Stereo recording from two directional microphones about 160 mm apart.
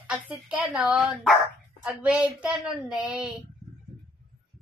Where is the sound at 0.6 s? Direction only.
5° right (ahead or behind).